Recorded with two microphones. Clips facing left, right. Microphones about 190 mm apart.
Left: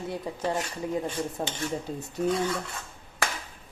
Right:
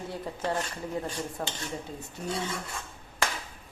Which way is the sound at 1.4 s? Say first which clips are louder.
Left 1 dB; 25° left (ahead or behind).